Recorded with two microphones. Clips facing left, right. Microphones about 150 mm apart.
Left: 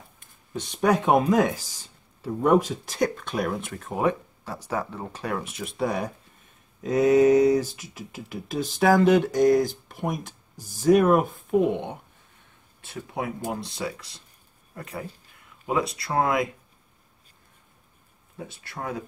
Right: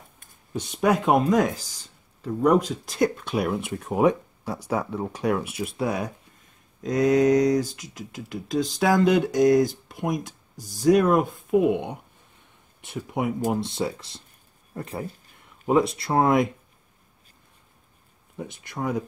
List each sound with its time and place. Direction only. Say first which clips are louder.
0.6 s speech: even; 5° right (ahead or behind)
3.2 s speech: right 2 dB; 10° right (ahead or behind)
11.5 s speech: right 2 dB; 10° right (ahead or behind); by 16.4 s 25° right (ahead or behind)
18.5 s speech: right 6 dB; 20° right (ahead or behind)